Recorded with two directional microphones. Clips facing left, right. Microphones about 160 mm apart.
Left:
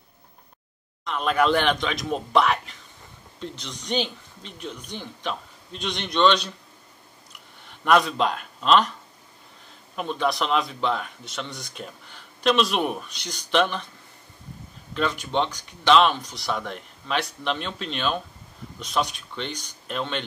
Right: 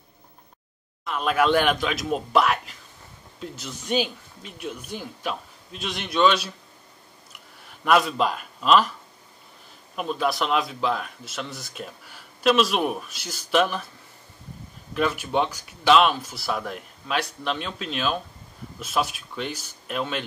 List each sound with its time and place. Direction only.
1.0 s speech: 5° right (ahead or behind)
7.3 s a sound: 5° right (ahead or behind)
9.9 s speech: 5° right (ahead or behind)
15.0 s speech: 10° right (ahead or behind)